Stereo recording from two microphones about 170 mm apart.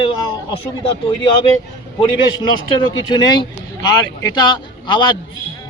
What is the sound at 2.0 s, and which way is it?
A man's voice, 25° left (ahead or behind).